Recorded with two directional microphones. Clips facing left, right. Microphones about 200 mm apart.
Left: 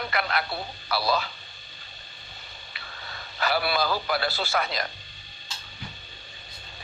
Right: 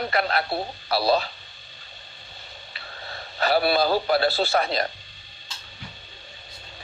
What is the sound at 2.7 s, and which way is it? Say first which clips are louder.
A man's voice: right 4 dB; 35° right (ahead or behind).